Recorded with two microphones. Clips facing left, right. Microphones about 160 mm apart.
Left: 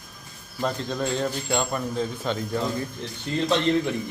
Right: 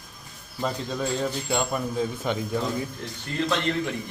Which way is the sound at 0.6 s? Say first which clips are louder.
Left 1 dB; 5° right (ahead or behind).